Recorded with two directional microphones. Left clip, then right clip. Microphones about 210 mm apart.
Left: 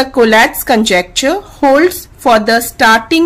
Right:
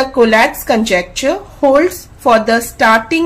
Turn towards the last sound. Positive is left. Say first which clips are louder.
# left 2 dB
turn(degrees=30)  # may be behind; listen again after turning